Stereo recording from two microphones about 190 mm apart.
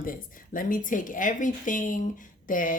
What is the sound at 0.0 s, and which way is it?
Speech, 45° left (ahead or behind).